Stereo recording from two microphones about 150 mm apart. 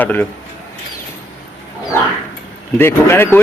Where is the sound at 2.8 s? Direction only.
15° left (ahead or behind).